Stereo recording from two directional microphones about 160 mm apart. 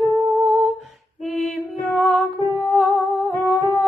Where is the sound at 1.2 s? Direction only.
Centre (ahead or behind).